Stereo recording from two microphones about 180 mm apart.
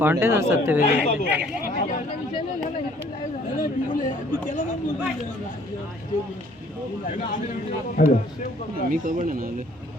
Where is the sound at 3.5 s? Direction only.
45° left (ahead or behind).